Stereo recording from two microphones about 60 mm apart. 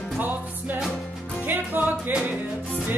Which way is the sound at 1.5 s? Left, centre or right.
Right.